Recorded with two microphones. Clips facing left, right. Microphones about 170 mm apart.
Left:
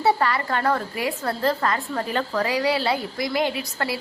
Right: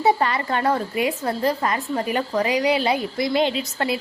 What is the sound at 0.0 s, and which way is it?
A woman's voice, 20° right (ahead or behind).